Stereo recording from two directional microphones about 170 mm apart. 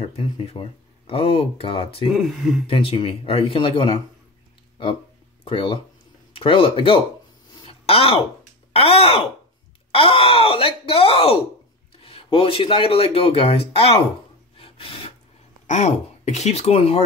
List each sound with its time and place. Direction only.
0.1 s speech: 35° left (ahead or behind)
2.1 s speech: centre (ahead or behind)
2.6 s speech: 35° left (ahead or behind)
5.4 s speech: 30° left (ahead or behind)
7.6 s a sound: 35° left (ahead or behind)
8.7 s speech: 35° left (ahead or behind)
14.6 s filing: 30° left (ahead or behind)
15.6 s speech: 45° left (ahead or behind)